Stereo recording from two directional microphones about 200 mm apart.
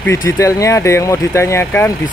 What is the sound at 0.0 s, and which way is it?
Speech, 15° left (ahead or behind).